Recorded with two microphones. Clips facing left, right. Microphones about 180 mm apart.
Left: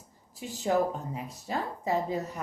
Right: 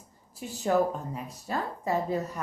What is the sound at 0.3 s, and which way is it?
A woman's voice, 15° left (ahead or behind).